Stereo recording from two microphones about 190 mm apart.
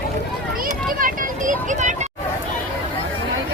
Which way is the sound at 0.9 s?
45° right (ahead or behind).